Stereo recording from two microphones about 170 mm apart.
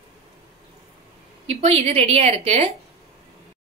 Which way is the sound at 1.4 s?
35° right (ahead or behind).